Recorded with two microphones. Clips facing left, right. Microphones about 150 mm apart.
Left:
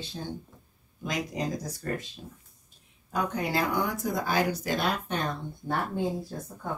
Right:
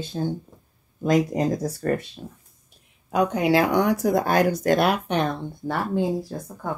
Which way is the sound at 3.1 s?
85° right.